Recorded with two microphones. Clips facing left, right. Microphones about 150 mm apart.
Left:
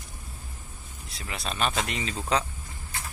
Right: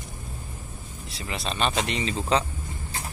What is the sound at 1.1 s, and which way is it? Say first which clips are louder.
Speech: right 3 dB; centre (ahead or behind).